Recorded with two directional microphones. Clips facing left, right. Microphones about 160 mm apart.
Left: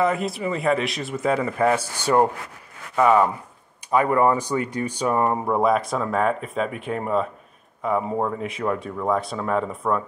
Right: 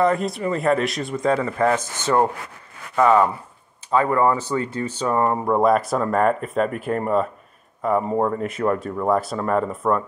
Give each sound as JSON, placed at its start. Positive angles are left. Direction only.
{"t": 0.0, "sound": "speech", "side_deg": 0}